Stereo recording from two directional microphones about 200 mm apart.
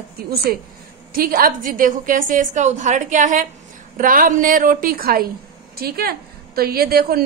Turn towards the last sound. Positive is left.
turn(degrees=-50)  # may be behind; listen again after turning